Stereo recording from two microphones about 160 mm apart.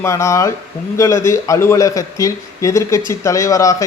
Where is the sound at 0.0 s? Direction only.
20° left (ahead or behind).